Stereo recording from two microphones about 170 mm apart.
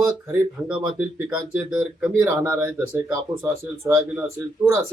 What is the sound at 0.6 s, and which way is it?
Speech, 5° right (ahead or behind).